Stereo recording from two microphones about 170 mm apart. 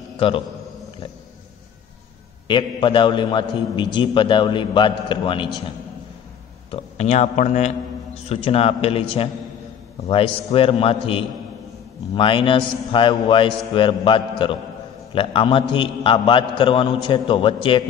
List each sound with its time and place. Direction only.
0.2 s a man's voice: 35° left (ahead or behind)
2.4 s a man's voice: 30° left (ahead or behind)
6.7 s a man's voice: 40° left (ahead or behind)